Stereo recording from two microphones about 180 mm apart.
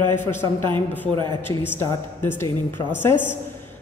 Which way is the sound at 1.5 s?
15° left (ahead or behind).